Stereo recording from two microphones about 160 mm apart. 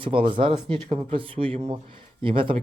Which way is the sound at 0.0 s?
30° right (ahead or behind).